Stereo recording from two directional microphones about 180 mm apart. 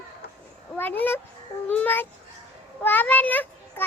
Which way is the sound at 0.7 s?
10° left (ahead or behind).